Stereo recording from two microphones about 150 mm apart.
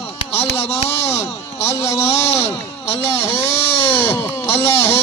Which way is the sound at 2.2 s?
45° left (ahead or behind).